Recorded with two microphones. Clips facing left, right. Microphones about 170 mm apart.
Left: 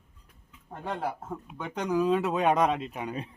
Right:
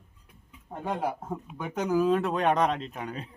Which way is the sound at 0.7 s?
15° right (ahead or behind).